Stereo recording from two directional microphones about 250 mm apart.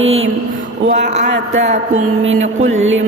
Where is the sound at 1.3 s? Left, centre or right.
Right.